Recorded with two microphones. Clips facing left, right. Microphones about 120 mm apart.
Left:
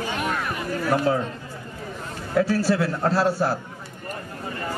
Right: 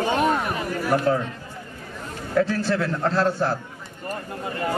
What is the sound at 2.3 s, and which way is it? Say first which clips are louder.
A man's voice: left 1 dB; 5° left (ahead or behind).